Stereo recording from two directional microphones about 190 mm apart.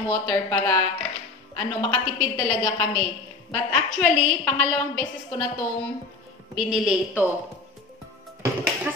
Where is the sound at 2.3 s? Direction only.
20° left (ahead or behind).